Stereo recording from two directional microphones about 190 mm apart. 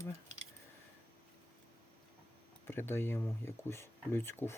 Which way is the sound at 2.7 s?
10° left (ahead or behind).